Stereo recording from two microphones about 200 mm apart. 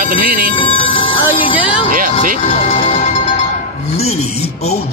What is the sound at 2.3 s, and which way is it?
Music, 30° left (ahead or behind).